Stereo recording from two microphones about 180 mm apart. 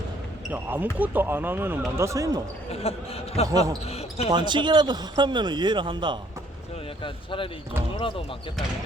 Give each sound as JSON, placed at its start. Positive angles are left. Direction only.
{"t": 0.5, "sound": "speech", "side_deg": -10}
{"t": 2.7, "sound": "speech", "side_deg": 35}
{"t": 3.8, "sound": "basketball bounce", "side_deg": 35}
{"t": 4.3, "sound": "a man's voice", "side_deg": -25}
{"t": 7.0, "sound": "speech", "side_deg": 30}